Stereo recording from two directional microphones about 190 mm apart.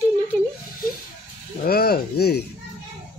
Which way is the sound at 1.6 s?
55° left (ahead or behind).